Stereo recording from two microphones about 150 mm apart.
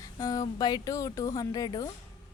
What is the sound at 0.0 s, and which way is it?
A woman's voice, 25° left (ahead or behind).